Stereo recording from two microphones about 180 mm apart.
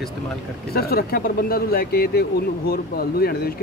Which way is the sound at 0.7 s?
60° left (ahead or behind).